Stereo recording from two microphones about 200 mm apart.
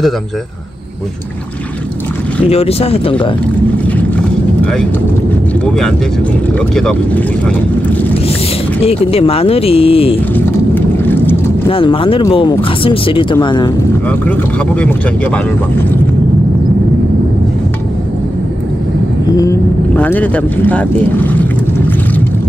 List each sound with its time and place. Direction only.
2.5 s speech: 30° left (ahead or behind)
6.7 s speech: 5° left (ahead or behind)
8.8 s speech: 30° left (ahead or behind)
10.3 s vehicle: 10° left (ahead or behind)
11.7 s speech: 25° left (ahead or behind)
19.3 s speech: 15° left (ahead or behind)